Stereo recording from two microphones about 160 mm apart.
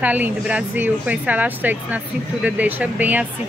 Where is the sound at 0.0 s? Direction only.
10° right (ahead or behind).